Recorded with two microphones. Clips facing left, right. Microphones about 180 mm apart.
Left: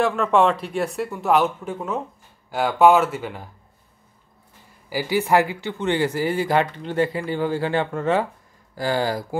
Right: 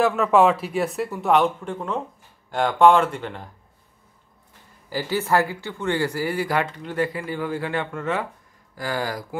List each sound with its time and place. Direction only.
0.0 s speech: centre (ahead or behind)
4.8 s speech: 10° left (ahead or behind); by 9.4 s 30° left (ahead or behind)